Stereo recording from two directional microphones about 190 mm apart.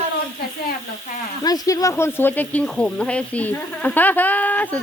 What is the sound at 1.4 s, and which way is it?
Speech, 20° left (ahead or behind).